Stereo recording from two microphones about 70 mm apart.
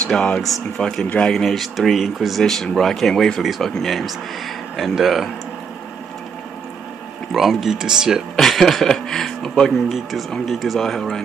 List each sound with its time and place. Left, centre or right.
0.0 s speech: centre
1.0 s speech: centre
1.3 s speech: centre
7.3 s speech: centre
8.4 s speech: centre